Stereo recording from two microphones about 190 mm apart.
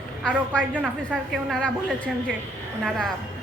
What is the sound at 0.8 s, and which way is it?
Speech, 5° right (ahead or behind).